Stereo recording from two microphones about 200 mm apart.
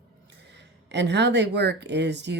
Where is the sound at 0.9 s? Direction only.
60° right (ahead or behind).